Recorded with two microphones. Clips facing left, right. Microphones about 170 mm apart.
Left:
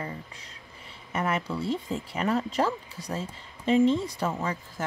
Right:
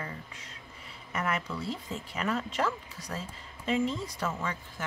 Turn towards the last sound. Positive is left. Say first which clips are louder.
# left 4 dB
turn(degrees=35)  # may be behind; listen again after turning